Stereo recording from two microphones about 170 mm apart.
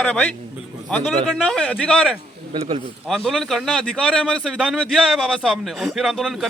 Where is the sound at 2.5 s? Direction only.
35° right (ahead or behind).